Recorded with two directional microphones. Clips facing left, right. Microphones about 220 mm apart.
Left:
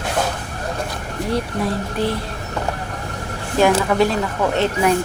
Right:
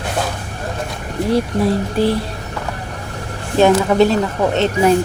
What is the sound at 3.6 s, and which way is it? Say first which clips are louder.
Speech: right 4 dB; 25° right (ahead or behind).